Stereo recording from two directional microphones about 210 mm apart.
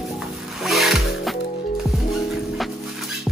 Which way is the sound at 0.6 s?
Centre (ahead or behind).